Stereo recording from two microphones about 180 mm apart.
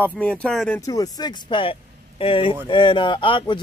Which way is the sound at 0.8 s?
20° left (ahead or behind).